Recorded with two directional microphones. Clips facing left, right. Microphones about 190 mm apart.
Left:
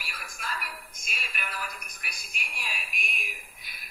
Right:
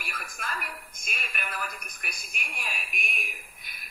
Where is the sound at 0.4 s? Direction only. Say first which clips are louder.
Even; 50° right (ahead or behind).